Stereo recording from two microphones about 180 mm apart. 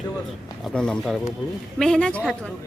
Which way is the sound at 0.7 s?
5° left (ahead or behind).